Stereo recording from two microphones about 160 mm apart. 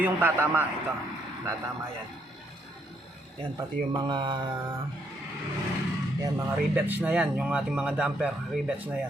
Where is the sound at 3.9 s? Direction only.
30° right (ahead or behind).